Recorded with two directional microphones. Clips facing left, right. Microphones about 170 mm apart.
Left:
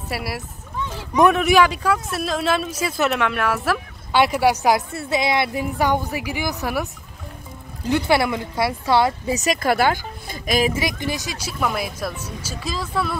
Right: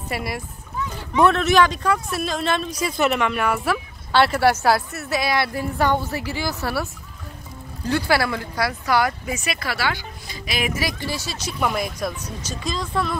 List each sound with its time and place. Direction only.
0.1 s speech: 5° left (ahead or behind)
1.1 s speech: 15° left (ahead or behind); by 3.8 s centre (ahead or behind)
4.1 s speech: 15° left (ahead or behind)
9.4 s speech: 45° left (ahead or behind)
10.7 s speech: 20° left (ahead or behind); by 13.2 s 5° left (ahead or behind)